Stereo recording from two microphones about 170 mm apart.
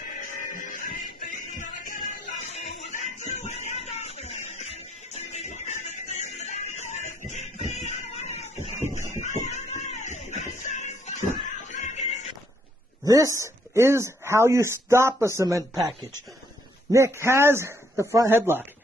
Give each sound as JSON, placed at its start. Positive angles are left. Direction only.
{"t": 0.4, "sound": "music", "side_deg": 55}
{"t": 2.2, "sound": "music", "side_deg": 40}
{"t": 7.7, "sound": "a sound", "side_deg": 40}
{"t": 10.6, "sound": "music", "side_deg": 45}
{"t": 13.0, "sound": "speech", "side_deg": -20}
{"t": 15.7, "sound": "speech", "side_deg": 0}
{"t": 16.9, "sound": "speech", "side_deg": -15}